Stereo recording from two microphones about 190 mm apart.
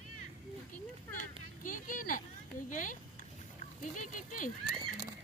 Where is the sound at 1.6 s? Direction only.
45° left (ahead or behind).